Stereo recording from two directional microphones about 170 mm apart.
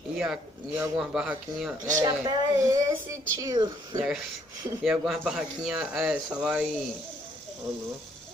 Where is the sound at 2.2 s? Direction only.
20° right (ahead or behind).